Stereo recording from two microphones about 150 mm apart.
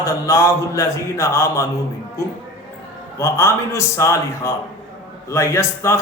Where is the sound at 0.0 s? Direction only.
20° left (ahead or behind).